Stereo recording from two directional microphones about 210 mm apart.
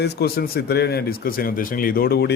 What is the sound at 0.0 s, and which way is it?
Speech, 50° left (ahead or behind).